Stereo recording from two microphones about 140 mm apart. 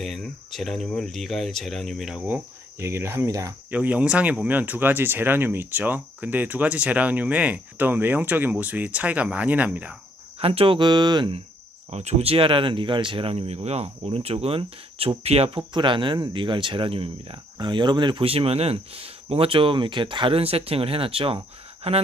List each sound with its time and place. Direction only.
0.0 s speech: centre (ahead or behind); by 3.5 s 20° right (ahead or behind)
3.7 s speech: 10° right (ahead or behind)
10.4 s speech: 40° right (ahead or behind)
11.9 s speech: 50° right (ahead or behind)